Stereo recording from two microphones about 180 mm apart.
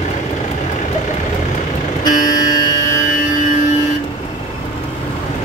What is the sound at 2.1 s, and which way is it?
Vehicle, 50° left (ahead or behind).